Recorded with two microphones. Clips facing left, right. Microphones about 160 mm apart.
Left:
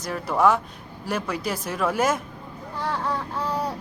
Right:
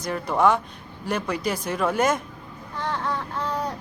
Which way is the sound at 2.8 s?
5° left (ahead or behind).